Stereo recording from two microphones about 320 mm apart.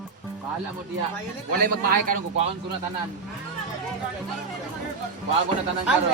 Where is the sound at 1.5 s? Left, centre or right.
Right.